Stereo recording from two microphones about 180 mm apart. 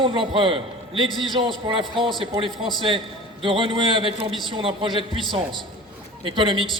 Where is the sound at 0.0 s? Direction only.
30° right (ahead or behind).